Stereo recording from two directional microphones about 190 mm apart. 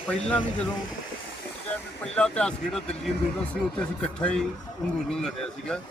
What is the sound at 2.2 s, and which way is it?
Speech, 5° left (ahead or behind).